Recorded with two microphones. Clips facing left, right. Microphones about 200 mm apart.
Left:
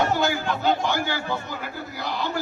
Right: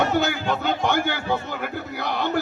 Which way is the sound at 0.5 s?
40° left (ahead or behind).